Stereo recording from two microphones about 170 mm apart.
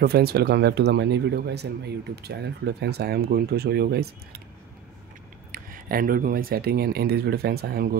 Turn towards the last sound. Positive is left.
turn(degrees=-70)  # may be behind; listen again after turning